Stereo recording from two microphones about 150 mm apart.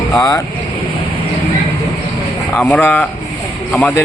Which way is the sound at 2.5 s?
5° left (ahead or behind).